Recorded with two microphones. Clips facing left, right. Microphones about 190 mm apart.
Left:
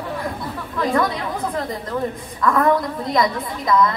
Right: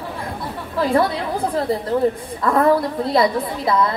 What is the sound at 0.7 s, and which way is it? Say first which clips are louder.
A woman's voice: right 3 dB; 30° right (ahead or behind).